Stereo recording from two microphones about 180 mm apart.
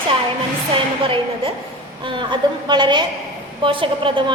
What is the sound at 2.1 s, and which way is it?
A woman's voice, 25° right (ahead or behind).